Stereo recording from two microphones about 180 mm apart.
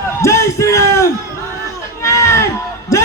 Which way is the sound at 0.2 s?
15° left (ahead or behind).